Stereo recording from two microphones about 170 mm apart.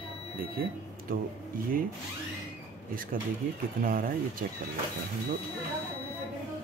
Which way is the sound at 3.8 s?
55° right (ahead or behind).